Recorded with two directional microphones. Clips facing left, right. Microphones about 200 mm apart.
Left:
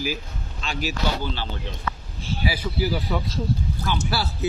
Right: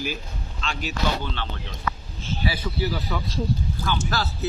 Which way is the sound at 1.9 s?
30° left (ahead or behind).